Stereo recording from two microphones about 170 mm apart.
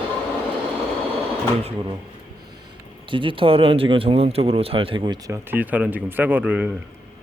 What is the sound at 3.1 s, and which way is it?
Speech, 30° right (ahead or behind).